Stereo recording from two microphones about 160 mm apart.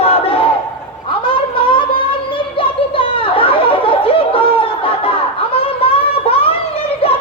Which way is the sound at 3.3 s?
35° left (ahead or behind).